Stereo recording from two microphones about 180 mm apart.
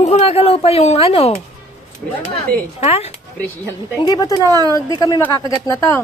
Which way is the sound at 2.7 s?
35° left (ahead or behind).